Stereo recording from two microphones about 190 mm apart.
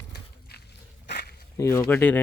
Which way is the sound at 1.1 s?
60° left (ahead or behind).